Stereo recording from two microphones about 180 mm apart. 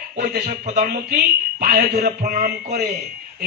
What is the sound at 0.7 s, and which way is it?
Speech, 55° right (ahead or behind).